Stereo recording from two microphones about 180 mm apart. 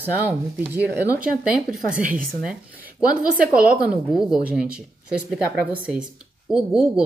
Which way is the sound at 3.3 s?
55° right (ahead or behind).